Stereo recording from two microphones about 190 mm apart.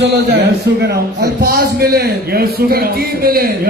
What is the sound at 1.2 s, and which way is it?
A man's voice, 55° right (ahead or behind).